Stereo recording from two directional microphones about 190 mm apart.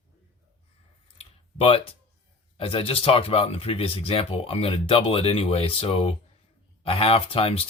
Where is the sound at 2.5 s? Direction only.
30° left (ahead or behind).